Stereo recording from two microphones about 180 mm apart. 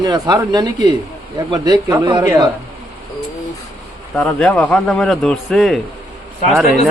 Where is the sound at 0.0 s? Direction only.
25° right (ahead or behind).